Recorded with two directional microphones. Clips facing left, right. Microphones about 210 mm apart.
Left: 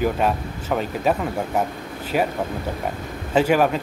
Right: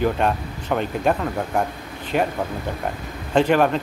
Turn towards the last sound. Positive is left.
turn(degrees=5)  # may be behind; listen again after turning